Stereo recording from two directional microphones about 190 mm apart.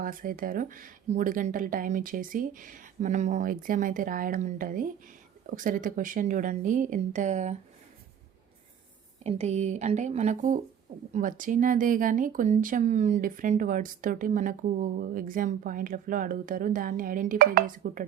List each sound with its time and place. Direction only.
0.0 s speech: 45° right (ahead or behind)
9.2 s speech: 35° right (ahead or behind)